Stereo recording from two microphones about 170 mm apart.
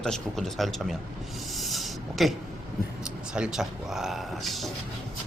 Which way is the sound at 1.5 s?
Centre (ahead or behind).